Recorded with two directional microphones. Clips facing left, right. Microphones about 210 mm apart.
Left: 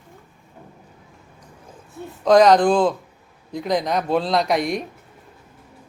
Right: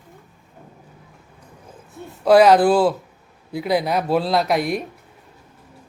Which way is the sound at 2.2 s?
5° right (ahead or behind).